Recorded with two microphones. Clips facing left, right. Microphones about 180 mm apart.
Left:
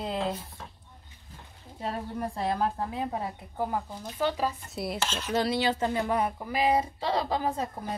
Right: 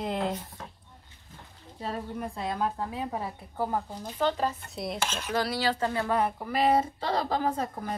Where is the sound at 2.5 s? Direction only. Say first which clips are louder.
Left 1 dB; 25° left (ahead or behind).